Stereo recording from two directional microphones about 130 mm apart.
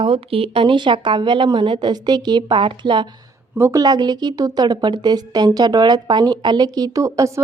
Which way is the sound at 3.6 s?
25° right (ahead or behind).